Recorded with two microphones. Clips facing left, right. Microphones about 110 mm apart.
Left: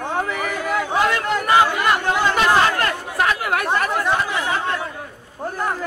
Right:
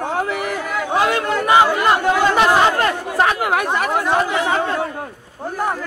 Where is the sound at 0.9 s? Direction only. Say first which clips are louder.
Right 4 dB; 15° right (ahead or behind).